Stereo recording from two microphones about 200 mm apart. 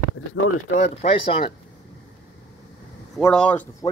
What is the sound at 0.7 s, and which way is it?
Speech, 35° left (ahead or behind).